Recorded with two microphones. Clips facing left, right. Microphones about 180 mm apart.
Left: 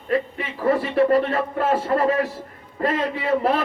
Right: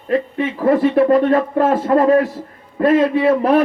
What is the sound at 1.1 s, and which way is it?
A man's voice, 45° right (ahead or behind).